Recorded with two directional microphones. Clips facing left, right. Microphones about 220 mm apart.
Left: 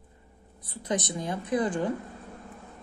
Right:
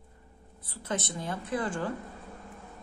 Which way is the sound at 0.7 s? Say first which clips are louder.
Left 4 dB; 15° left (ahead or behind).